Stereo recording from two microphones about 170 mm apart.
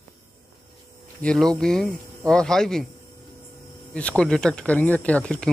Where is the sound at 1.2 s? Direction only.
5° left (ahead or behind).